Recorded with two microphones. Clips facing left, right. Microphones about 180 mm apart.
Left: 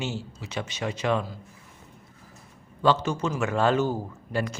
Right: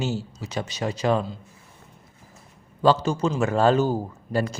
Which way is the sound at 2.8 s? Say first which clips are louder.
Right 3 dB; 35° right (ahead or behind).